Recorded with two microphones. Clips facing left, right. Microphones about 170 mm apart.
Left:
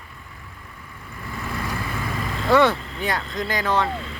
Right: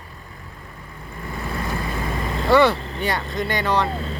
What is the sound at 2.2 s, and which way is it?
Vehicle, 25° right (ahead or behind).